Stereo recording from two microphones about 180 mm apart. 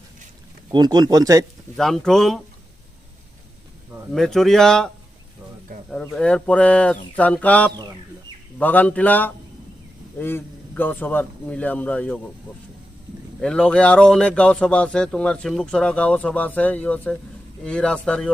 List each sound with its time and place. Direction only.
0.7 s speech: 25° right (ahead or behind)
1.7 s speech: centre (ahead or behind)
4.1 s speech: centre (ahead or behind)
5.7 s a sound: 55° right (ahead or behind)
6.1 s speech: 5° left (ahead or behind)
13.4 s speech: 5° left (ahead or behind)